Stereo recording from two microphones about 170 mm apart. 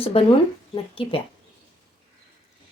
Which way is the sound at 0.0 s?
35° left (ahead or behind).